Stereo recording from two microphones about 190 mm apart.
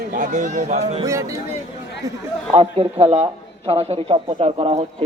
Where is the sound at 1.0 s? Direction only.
15° right (ahead or behind).